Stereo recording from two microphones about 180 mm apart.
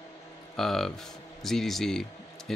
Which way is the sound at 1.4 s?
Centre (ahead or behind).